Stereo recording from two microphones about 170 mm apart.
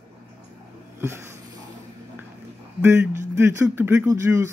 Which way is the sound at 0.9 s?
15° right (ahead or behind).